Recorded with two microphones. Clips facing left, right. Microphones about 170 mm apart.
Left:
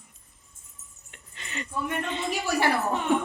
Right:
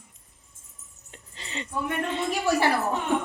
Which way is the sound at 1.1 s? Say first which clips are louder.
Right 1 dB; 30° right (ahead or behind).